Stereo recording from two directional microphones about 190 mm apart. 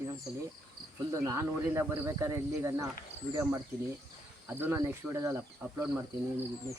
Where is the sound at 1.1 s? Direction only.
15° right (ahead or behind).